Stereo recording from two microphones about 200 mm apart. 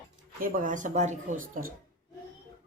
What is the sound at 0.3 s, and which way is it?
Speech, 40° right (ahead or behind).